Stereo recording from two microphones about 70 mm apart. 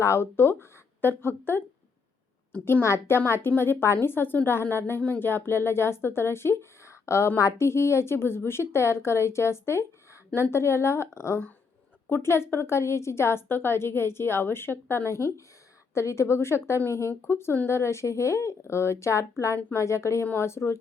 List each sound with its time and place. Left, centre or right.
0.0 s speech: left
2.8 s a woman's voice: left